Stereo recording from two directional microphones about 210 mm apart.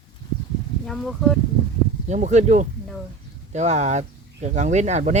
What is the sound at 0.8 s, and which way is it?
Speech, centre (ahead or behind).